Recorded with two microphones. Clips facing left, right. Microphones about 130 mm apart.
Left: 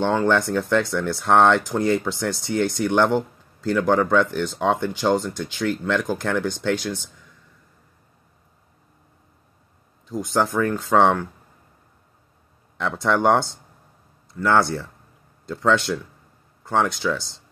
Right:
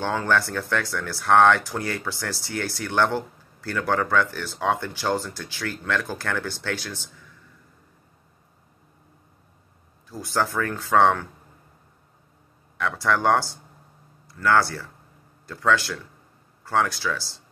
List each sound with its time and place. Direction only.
0.0 s speech: 15° left (ahead or behind)
10.0 s speech: 20° left (ahead or behind)
12.7 s speech: 20° left (ahead or behind)